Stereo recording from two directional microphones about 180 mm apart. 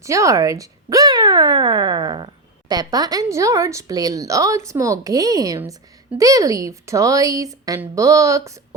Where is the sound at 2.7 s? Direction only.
20° right (ahead or behind).